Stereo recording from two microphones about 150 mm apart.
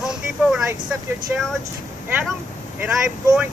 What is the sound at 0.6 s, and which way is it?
Speech, 15° right (ahead or behind).